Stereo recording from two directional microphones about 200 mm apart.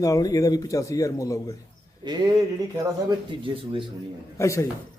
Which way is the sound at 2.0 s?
20° right (ahead or behind).